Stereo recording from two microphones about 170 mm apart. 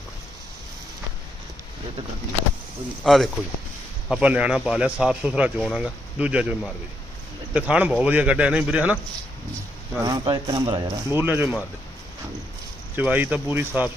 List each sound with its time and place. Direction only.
3.0 s a man's voice: centre (ahead or behind)
10.0 s speech: 25° right (ahead or behind); by 11.5 s 10° right (ahead or behind)
13.0 s a man's voice: 10° right (ahead or behind)